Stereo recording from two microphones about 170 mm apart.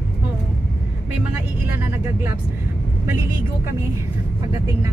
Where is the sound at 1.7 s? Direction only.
10° right (ahead or behind).